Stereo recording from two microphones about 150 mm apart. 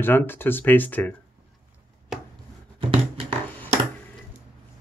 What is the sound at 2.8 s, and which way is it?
Music, 35° right (ahead or behind).